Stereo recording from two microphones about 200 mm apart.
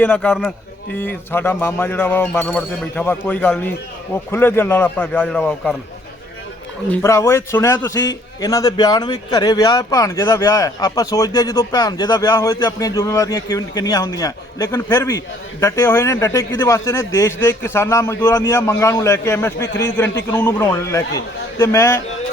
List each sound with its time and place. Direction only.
0.0 s a man's voice: 5° left (ahead or behind)
6.9 s a man's voice: 15° left (ahead or behind)